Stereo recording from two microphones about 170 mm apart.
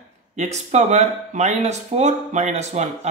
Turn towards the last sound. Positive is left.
turn(degrees=-40)  # may be behind; listen again after turning